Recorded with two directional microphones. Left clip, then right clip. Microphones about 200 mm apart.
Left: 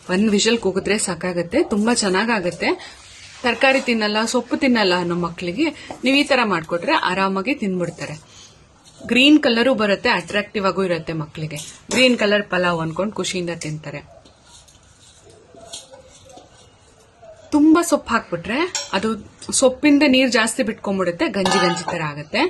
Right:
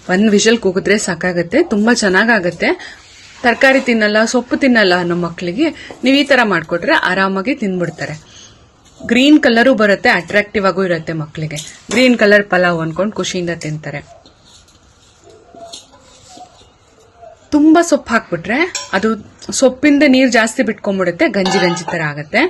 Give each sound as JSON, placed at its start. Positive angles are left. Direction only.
{"t": 0.3, "sound": "speech", "side_deg": -15}
{"t": 17.5, "sound": "speech", "side_deg": -15}